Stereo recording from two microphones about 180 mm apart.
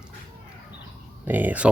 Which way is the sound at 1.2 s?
10° right (ahead or behind).